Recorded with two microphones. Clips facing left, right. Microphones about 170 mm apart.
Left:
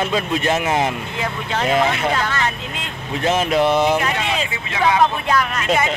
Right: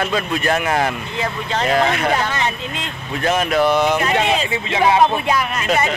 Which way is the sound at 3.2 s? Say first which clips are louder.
Even; 25° left (ahead or behind).